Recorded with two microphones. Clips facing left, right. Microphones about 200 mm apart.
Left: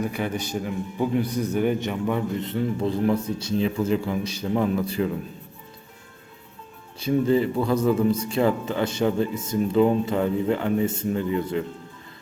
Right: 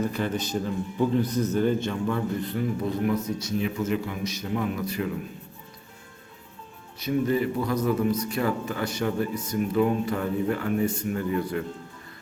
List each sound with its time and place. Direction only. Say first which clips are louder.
0.0 s a man's voice: even; 10° left (ahead or behind); by 4.8 s 30° left (ahead or behind)
7.0 s a man's voice: left 4 dB; 25° left (ahead or behind)